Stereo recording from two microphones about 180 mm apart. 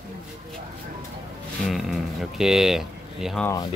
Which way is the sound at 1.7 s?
Centre (ahead or behind).